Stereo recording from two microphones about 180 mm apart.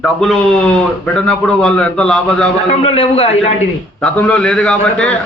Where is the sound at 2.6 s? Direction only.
35° left (ahead or behind).